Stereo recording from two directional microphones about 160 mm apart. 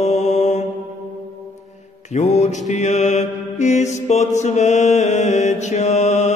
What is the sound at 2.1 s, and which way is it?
Mantra, 45° left (ahead or behind).